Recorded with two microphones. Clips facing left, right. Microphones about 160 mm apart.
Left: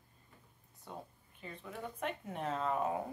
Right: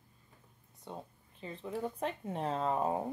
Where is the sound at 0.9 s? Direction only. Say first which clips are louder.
Right 3 dB; 20° right (ahead or behind).